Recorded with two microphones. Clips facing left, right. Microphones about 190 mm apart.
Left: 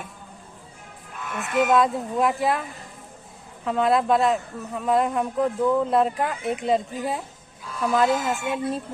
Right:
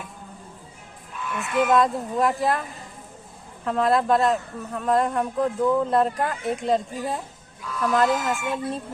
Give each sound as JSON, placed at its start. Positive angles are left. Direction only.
{"t": 1.2, "sound": "speech", "side_deg": 40}
{"t": 1.7, "sound": "speech", "side_deg": 0}